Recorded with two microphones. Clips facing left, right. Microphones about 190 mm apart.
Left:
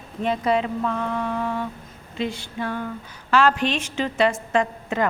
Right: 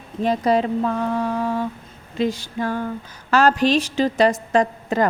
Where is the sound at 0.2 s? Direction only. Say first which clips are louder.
Right 3 dB; 40° right (ahead or behind).